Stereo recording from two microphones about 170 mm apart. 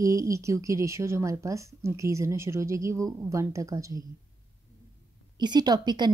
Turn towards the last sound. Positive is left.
turn(degrees=-25)  # may be behind; listen again after turning